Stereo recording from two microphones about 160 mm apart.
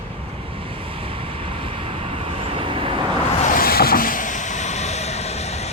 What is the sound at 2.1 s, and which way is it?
Vehicle, 35° right (ahead or behind).